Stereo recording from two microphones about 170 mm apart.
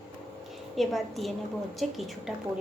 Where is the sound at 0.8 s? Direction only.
Centre (ahead or behind).